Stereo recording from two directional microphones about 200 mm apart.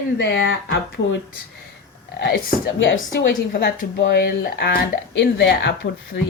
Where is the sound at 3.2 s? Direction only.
55° left (ahead or behind).